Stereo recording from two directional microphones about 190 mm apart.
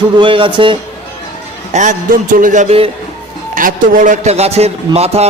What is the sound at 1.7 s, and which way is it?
A man's voice, 40° right (ahead or behind).